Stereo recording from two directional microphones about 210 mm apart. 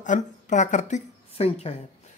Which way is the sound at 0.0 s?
35° left (ahead or behind).